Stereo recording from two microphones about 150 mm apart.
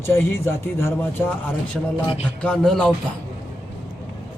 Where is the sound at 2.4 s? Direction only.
5° left (ahead or behind).